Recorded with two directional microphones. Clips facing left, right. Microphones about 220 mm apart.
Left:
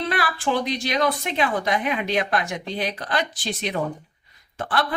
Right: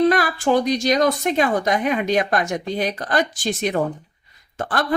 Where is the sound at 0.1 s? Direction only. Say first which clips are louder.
Right 6 dB; 45° right (ahead or behind).